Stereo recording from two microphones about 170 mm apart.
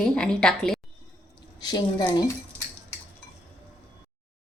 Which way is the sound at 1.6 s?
25° left (ahead or behind).